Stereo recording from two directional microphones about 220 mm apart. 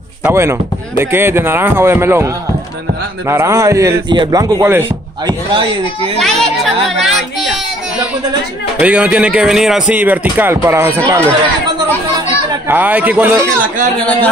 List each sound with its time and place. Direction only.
0.2 s speech: 10° right (ahead or behind)
5.5 s speech: 25° right (ahead or behind)
6.1 s speech: centre (ahead or behind)
8.8 s speech: 5° right (ahead or behind)
12.6 s speech: 10° right (ahead or behind)